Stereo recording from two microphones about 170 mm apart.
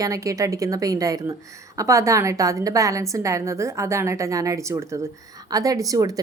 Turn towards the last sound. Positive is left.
turn(degrees=-20)  # may be behind; listen again after turning